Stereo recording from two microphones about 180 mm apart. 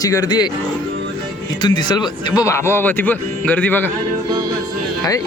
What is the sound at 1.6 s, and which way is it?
Speech, 25° left (ahead or behind).